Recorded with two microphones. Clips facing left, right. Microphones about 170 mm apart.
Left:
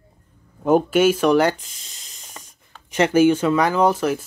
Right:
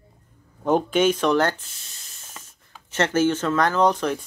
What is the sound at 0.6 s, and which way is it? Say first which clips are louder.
Speech: left 4 dB; 10° left (ahead or behind).